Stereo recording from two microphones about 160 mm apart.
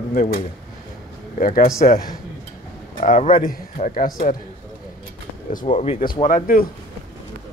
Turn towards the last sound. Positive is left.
turn(degrees=60)  # may be behind; listen again after turning